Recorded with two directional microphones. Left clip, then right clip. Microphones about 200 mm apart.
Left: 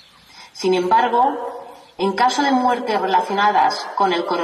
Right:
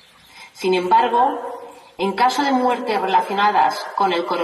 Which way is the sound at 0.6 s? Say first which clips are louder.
Even; 25° left (ahead or behind).